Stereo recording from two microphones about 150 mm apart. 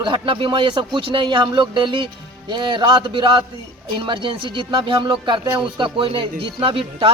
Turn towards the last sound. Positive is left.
turn(degrees=-35)  # may be behind; listen again after turning